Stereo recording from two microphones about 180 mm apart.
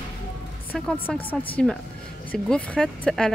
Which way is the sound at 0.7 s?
5° left (ahead or behind).